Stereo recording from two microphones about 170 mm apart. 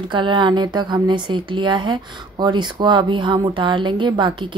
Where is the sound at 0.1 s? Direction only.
30° right (ahead or behind).